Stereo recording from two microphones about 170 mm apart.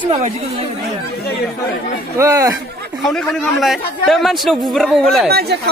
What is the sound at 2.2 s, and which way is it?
Speech, 20° right (ahead or behind).